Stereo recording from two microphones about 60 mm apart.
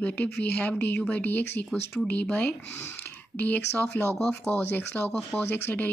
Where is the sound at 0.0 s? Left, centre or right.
Left.